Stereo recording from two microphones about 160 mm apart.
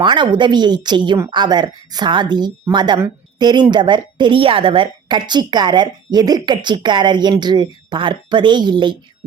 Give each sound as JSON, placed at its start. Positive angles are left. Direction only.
{"t": 0.0, "sound": "a woman's voice", "side_deg": -30}